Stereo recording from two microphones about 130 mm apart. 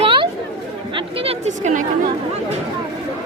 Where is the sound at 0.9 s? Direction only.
50° right (ahead or behind); by 1.8 s 65° right (ahead or behind).